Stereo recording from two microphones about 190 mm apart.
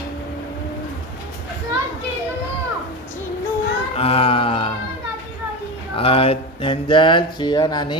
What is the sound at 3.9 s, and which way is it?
Music, 30° left (ahead or behind).